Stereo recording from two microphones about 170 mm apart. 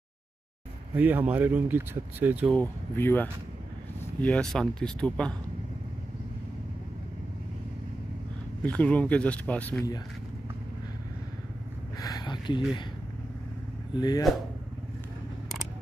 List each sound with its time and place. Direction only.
0.9 s speech: 10° right (ahead or behind)
2.5 s speech: 10° left (ahead or behind)
8.6 s speech: 10° left (ahead or behind)
12.0 s speech: 25° left (ahead or behind)
13.9 s speech: 25° left (ahead or behind)